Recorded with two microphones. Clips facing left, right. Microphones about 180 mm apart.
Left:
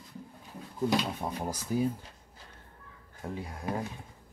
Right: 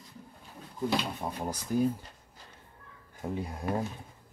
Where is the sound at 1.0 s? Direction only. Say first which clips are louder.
Left 1 dB; 5° left (ahead or behind).